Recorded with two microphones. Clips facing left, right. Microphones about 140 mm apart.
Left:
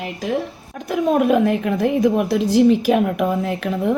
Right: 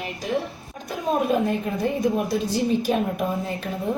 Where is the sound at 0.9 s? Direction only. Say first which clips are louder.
Left 6 dB; 75° left (ahead or behind).